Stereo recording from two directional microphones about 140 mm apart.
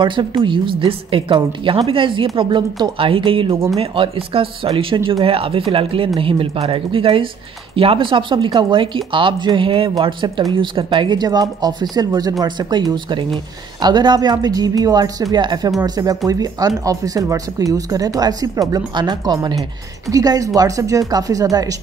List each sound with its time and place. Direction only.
0.0 s speech: 35° right (ahead or behind)